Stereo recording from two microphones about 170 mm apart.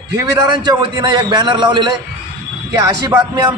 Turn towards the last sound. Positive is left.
turn(degrees=-20)  # may be behind; listen again after turning